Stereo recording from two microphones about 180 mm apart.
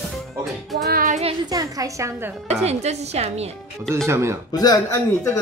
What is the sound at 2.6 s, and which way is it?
Speech, 35° right (ahead or behind).